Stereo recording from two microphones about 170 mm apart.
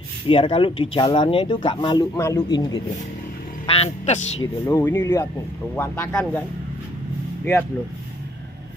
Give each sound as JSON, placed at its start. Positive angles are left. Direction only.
{"t": 0.3, "sound": "speech", "side_deg": 30}
{"t": 3.6, "sound": "a man's voice", "side_deg": 35}
{"t": 4.6, "sound": "speech", "side_deg": 15}